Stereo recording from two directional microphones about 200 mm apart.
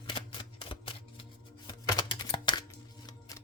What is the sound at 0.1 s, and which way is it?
Music, 25° left (ahead or behind).